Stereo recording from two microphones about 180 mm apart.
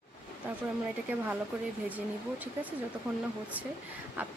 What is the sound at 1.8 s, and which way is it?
Speech, 10° right (ahead or behind).